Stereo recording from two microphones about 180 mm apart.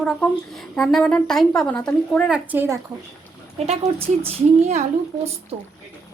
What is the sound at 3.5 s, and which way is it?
Speech, 35° right (ahead or behind).